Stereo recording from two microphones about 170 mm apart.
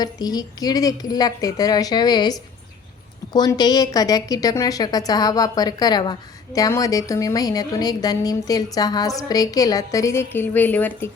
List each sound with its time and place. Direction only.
0.0 s a woman's voice: 25° left (ahead or behind)